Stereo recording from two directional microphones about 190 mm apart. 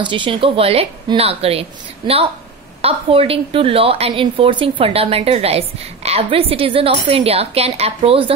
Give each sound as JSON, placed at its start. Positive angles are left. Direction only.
{"t": 0.0, "sound": "a woman's voice", "side_deg": -25}